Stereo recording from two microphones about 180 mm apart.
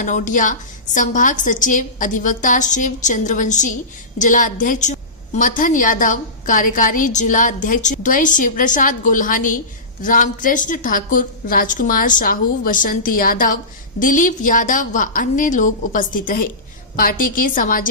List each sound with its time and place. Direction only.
0.0 s a woman's voice: 45° left (ahead or behind)